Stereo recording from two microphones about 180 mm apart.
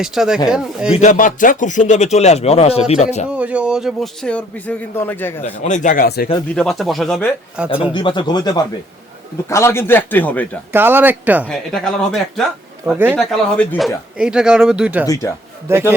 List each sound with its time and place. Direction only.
0.0 s a man's voice: centre (ahead or behind)
1.0 s speech: 45° left (ahead or behind)
3.2 s a man's voice: 5° right (ahead or behind); by 5.3 s 10° left (ahead or behind)
5.4 s speech: 45° left (ahead or behind)
6.5 s a man's voice: centre (ahead or behind)
7.9 s a man's voice: 25° left (ahead or behind); by 10.6 s 10° left (ahead or behind)
10.7 s speech: 10° right (ahead or behind)
11.4 s a man's voice: centre (ahead or behind)
12.8 s speech: 10° right (ahead or behind)
13.1 s a man's voice: 5° left (ahead or behind)
15.0 s speech: 20° left (ahead or behind)
15.7 s speech: 15° right (ahead or behind)